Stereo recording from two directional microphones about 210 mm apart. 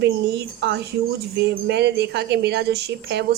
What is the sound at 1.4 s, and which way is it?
A woman's voice, 55° right (ahead or behind).